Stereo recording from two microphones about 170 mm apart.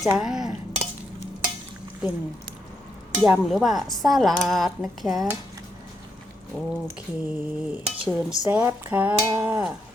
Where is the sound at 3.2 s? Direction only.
5° right (ahead or behind).